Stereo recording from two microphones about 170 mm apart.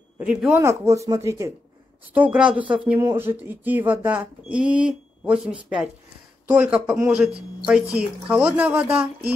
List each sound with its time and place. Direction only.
0.2 s speech: 5° right (ahead or behind)
0.5 s speech: 15° right (ahead or behind)
2.1 s speech: 5° right (ahead or behind)